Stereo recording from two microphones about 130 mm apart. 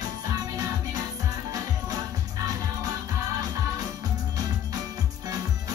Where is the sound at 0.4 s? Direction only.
25° right (ahead or behind).